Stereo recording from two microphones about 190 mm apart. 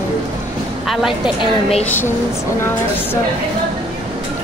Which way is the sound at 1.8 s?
10° left (ahead or behind).